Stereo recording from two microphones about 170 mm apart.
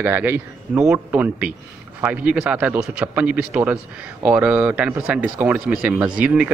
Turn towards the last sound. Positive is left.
turn(degrees=-5)  # may be behind; listen again after turning